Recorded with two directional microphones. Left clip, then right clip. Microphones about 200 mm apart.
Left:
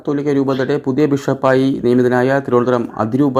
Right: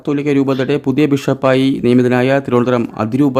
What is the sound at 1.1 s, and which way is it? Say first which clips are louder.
Speech: right 1 dB; 25° right (ahead or behind).